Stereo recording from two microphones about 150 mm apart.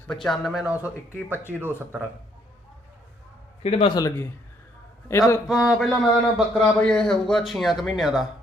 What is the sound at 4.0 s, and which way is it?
Speech, 20° left (ahead or behind).